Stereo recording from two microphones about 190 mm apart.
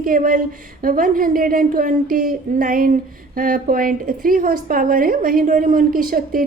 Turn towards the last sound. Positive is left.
turn(degrees=-50)  # may be behind; listen again after turning